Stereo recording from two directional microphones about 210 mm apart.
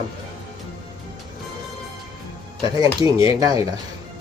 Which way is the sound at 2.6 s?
20° right (ahead or behind).